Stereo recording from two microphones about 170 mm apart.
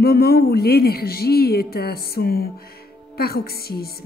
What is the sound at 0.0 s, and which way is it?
Speech, 65° left (ahead or behind).